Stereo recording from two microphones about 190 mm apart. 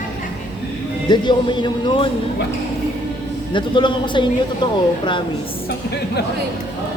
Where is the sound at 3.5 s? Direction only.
25° left (ahead or behind).